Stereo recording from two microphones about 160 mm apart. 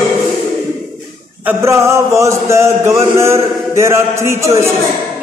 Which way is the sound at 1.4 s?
15° right (ahead or behind).